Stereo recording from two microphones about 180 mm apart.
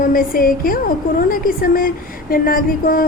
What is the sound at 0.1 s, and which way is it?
A woman's voice, 55° left (ahead or behind).